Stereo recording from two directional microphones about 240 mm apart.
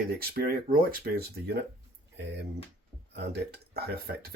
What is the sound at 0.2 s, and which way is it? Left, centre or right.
Speech, right.